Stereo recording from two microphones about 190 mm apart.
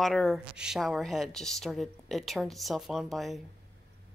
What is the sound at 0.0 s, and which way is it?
A woman's voice, centre (ahead or behind).